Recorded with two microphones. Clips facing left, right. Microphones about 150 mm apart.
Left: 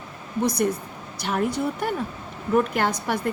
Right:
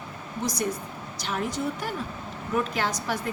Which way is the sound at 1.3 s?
50° left (ahead or behind).